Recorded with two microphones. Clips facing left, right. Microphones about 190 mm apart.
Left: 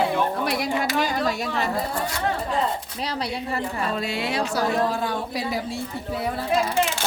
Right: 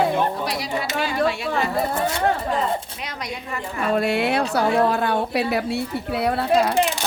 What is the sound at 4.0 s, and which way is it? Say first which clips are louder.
A woman's voice: right 6 dB; 60° right (ahead or behind).